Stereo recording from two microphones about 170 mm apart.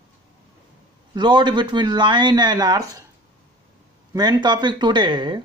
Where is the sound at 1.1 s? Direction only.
25° right (ahead or behind).